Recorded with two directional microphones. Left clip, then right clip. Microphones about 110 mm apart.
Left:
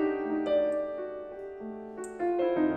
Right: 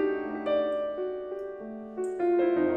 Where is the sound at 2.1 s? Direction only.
15° right (ahead or behind).